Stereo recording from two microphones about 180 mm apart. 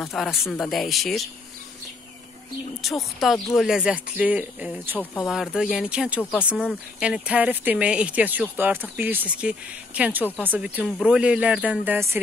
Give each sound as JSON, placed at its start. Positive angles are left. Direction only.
{"t": 0.0, "sound": "speech", "side_deg": 0}
{"t": 2.8, "sound": "speech", "side_deg": 0}